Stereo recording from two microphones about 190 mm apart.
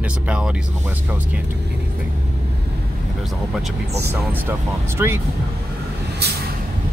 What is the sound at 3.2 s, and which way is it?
Speech, centre (ahead or behind).